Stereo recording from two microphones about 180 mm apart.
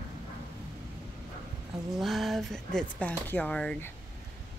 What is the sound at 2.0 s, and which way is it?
Speech, centre (ahead or behind).